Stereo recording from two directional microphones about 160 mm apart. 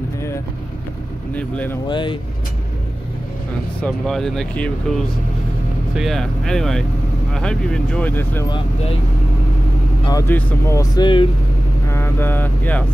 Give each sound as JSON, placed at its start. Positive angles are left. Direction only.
{"t": 1.3, "sound": "speech", "side_deg": 10}
{"t": 1.9, "sound": "speech", "side_deg": 30}
{"t": 3.8, "sound": "speech", "side_deg": 5}
{"t": 10.0, "sound": "speech", "side_deg": 20}
{"t": 11.9, "sound": "music", "side_deg": 15}